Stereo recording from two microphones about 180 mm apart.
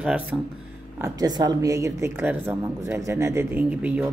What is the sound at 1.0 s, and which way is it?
A woman's voice, 20° right (ahead or behind).